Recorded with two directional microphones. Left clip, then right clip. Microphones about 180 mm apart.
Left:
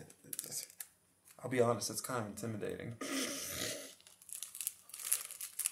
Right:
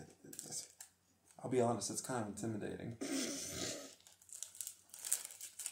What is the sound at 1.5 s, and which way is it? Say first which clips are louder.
Speech: left 3 dB; 15° left (ahead or behind).